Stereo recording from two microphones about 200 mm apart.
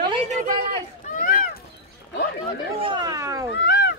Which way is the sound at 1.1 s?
45° left (ahead or behind).